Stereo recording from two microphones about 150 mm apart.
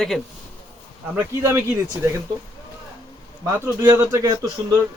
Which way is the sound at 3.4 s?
20° right (ahead or behind).